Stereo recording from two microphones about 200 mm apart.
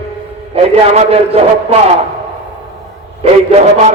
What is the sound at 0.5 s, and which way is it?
A man's voice, 30° right (ahead or behind).